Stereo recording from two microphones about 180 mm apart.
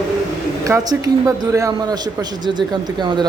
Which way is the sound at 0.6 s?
20° right (ahead or behind).